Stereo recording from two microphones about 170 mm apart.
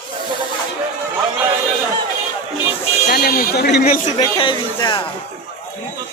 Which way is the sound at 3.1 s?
60° left (ahead or behind).